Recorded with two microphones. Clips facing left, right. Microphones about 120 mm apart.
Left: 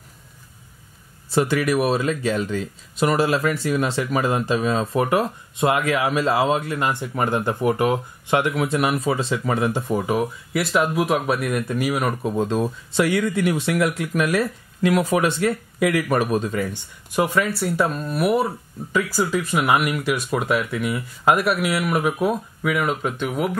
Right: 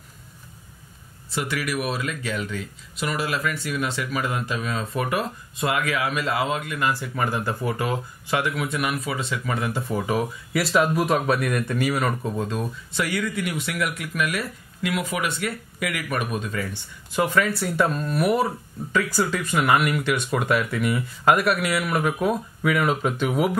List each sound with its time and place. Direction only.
1.3 s speech: 30° left (ahead or behind)
9.9 s speech: centre (ahead or behind)
12.2 s speech: 15° left (ahead or behind)
12.4 s speech: 25° left (ahead or behind)
16.6 s speech: 10° left (ahead or behind)